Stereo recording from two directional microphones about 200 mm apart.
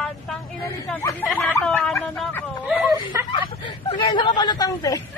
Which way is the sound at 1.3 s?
10° left (ahead or behind).